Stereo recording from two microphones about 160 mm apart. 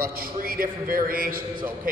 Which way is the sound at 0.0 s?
65° right (ahead or behind).